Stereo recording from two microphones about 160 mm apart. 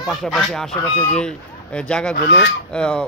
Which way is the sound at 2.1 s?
90° left.